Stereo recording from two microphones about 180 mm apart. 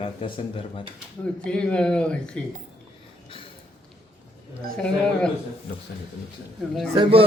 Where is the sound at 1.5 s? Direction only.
5° left (ahead or behind).